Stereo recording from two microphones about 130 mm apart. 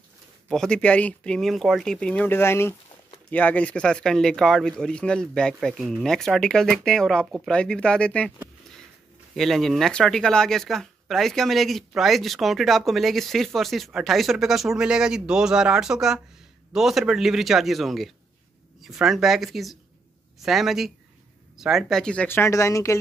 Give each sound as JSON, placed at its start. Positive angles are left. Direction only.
{"t": 0.5, "sound": "speech", "side_deg": 5}
{"t": 9.3, "sound": "speech", "side_deg": 0}
{"t": 22.4, "sound": "speech", "side_deg": 25}